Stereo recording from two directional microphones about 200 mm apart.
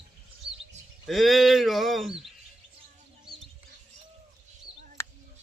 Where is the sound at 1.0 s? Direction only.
Centre (ahead or behind).